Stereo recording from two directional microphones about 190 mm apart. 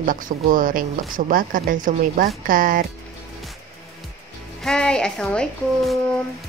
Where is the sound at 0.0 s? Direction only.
45° right (ahead or behind).